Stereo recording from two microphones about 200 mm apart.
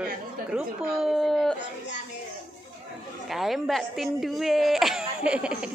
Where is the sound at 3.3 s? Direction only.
Centre (ahead or behind).